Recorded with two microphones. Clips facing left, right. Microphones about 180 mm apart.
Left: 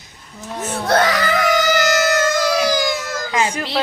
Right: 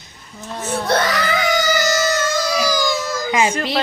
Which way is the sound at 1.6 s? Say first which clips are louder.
Left 2 dB; 50° left (ahead or behind).